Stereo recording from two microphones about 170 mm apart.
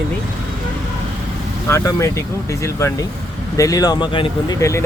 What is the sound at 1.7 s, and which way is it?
Speech, 15° left (ahead or behind).